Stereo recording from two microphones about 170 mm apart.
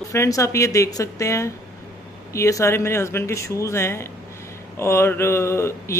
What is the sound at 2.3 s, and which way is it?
Mantra, 15° left (ahead or behind).